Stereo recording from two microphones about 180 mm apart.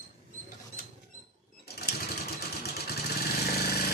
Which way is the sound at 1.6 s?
60° left (ahead or behind).